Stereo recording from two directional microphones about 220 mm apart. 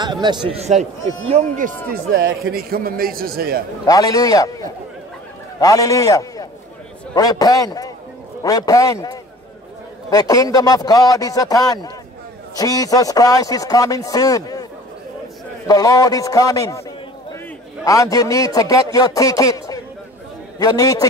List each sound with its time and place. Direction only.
0.0 s a man's voice: 20° right (ahead or behind)
2.5 s a man's voice: 40° right (ahead or behind)
3.8 s speech: 15° left (ahead or behind)
17.8 s speech: 15° left (ahead or behind)